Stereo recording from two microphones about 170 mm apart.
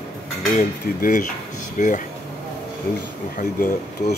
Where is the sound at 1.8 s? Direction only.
50° left (ahead or behind).